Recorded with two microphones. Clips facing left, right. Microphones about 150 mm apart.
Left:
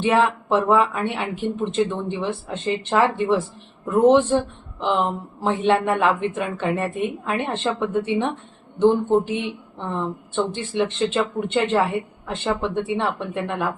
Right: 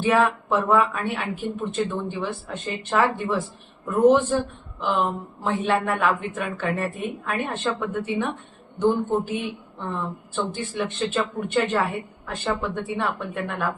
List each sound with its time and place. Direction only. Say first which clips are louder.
0.0 s speech: left 1 dB; 25° left (ahead or behind)